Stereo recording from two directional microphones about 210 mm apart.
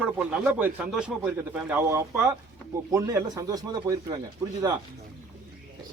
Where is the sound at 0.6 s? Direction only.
5° right (ahead or behind).